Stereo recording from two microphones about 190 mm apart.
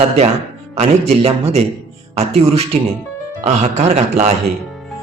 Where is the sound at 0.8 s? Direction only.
30° right (ahead or behind).